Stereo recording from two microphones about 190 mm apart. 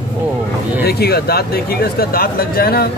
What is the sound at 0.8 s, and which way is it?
Speech, 55° left (ahead or behind).